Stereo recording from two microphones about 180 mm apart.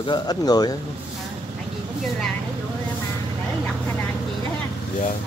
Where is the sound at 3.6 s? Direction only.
10° left (ahead or behind).